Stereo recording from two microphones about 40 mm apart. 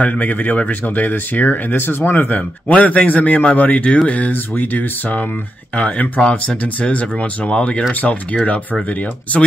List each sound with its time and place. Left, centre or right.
0.0 s speech: left
2.7 s speech: left
5.8 s speech: left